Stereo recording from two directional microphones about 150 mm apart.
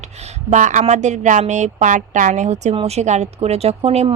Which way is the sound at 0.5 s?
55° right (ahead or behind).